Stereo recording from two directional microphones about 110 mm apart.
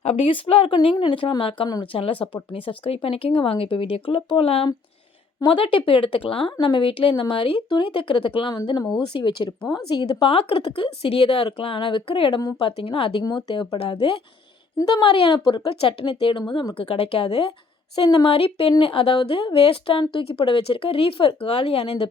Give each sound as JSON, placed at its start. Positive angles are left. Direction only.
{"t": 0.0, "sound": "speech", "side_deg": 75}
{"t": 0.3, "sound": "a woman's voice", "side_deg": 60}